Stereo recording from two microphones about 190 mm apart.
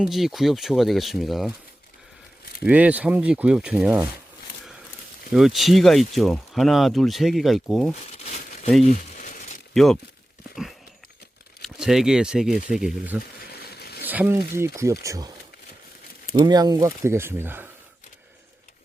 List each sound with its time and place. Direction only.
0.0 s speech: centre (ahead or behind)
2.6 s speech: 5° right (ahead or behind)
5.3 s speech: centre (ahead or behind)
9.1 s a sound: 45° left (ahead or behind)
9.7 s speech: centre (ahead or behind)
10.5 s a sound: centre (ahead or behind)
11.6 s speech: centre (ahead or behind)
13.7 s zipper: 55° left (ahead or behind)
14.0 s speech: 10° right (ahead or behind)
16.3 s speech: 20° right (ahead or behind)